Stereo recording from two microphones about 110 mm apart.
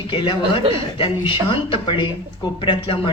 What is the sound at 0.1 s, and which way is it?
Speech, 50° left (ahead or behind).